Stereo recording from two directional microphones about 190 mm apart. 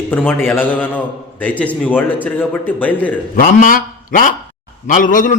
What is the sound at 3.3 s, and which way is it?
Speech, 50° left (ahead or behind).